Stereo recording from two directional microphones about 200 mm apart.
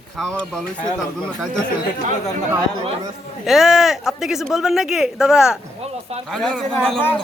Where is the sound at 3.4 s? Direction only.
Centre (ahead or behind).